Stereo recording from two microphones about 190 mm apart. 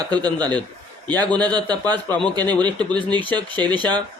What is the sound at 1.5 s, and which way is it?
Speech, 20° right (ahead or behind).